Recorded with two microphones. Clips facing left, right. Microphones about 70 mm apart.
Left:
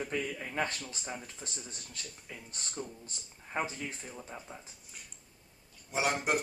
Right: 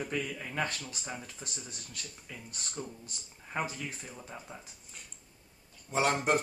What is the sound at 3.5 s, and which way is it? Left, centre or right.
Speech, centre.